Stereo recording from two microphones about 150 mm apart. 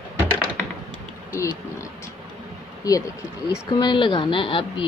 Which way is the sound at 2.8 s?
25° left (ahead or behind).